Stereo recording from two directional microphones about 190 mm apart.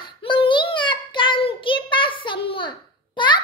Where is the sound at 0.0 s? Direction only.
25° left (ahead or behind).